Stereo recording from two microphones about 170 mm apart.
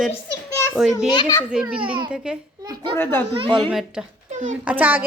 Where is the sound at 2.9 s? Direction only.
10° left (ahead or behind).